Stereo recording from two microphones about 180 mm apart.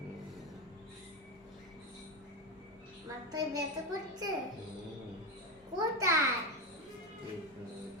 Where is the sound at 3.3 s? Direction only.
20° right (ahead or behind).